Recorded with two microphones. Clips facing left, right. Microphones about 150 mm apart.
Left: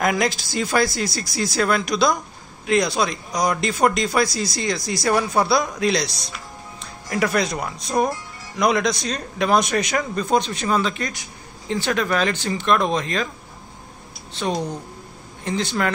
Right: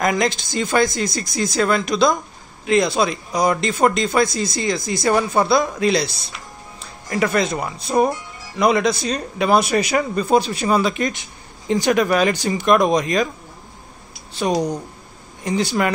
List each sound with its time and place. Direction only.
0.0 s speech: centre (ahead or behind)
11.0 s speech: 25° right (ahead or behind)
14.3 s speech: 10° right (ahead or behind)